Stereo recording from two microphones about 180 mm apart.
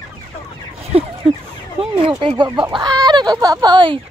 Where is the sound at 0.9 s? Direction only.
35° right (ahead or behind).